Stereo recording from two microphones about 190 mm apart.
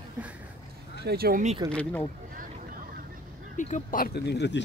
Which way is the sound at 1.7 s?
5° left (ahead or behind).